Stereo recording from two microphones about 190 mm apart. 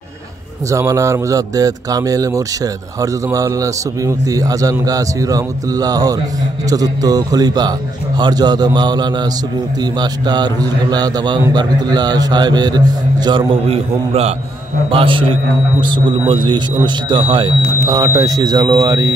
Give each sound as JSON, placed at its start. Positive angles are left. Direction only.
{"t": 0.7, "sound": "a man's voice", "side_deg": -15}